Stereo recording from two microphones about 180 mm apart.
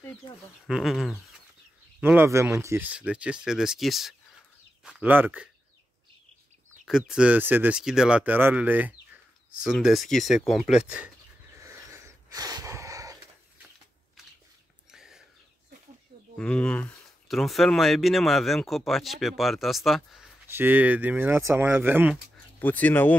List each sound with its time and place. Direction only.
0.7 s speech: centre (ahead or behind)
6.9 s speech: 5° right (ahead or behind)
11.5 s a sound: 15° right (ahead or behind)
14.9 s a sound: 5° right (ahead or behind)
16.3 s speech: 5° left (ahead or behind)
20.4 s speech: 10° right (ahead or behind)
22.6 s speech: 10° left (ahead or behind)